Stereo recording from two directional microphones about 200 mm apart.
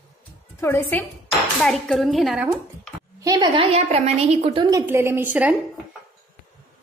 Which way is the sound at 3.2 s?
15° right (ahead or behind).